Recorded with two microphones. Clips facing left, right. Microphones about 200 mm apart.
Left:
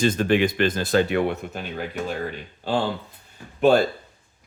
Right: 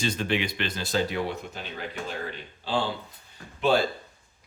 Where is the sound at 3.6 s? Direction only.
50° left (ahead or behind).